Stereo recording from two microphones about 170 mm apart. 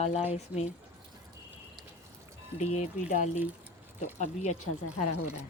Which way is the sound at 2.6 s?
45° left (ahead or behind).